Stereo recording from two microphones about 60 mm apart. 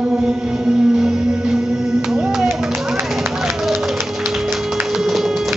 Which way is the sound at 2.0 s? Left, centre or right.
Centre.